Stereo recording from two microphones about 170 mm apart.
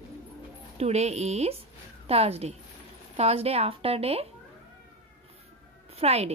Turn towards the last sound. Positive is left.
turn(degrees=-35)  # may be behind; listen again after turning